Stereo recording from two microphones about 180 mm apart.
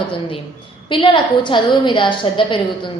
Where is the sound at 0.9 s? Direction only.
25° left (ahead or behind).